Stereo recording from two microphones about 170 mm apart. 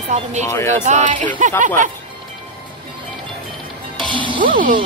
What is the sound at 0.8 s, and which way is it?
Speech, 45° right (ahead or behind).